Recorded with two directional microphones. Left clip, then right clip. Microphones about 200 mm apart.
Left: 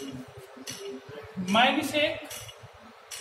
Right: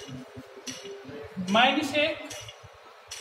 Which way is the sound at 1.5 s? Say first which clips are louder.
Right 1 dB; 15° right (ahead or behind).